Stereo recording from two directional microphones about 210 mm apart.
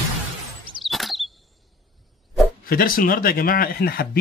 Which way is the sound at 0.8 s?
Centre (ahead or behind).